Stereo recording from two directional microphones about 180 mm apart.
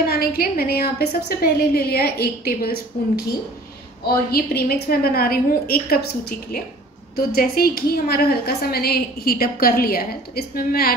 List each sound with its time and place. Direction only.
0.0 s a woman's voice: 55° left (ahead or behind)
4.0 s a woman's voice: 60° left (ahead or behind)
7.2 s a woman's voice: 55° left (ahead or behind)